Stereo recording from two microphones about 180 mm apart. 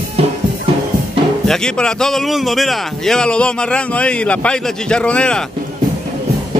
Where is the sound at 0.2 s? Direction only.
35° right (ahead or behind).